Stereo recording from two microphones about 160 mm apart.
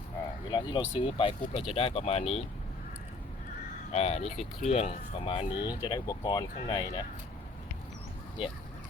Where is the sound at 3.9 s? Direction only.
40° left (ahead or behind); by 7.1 s 25° left (ahead or behind).